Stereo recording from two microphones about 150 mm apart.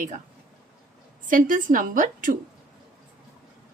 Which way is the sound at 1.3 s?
60° right (ahead or behind).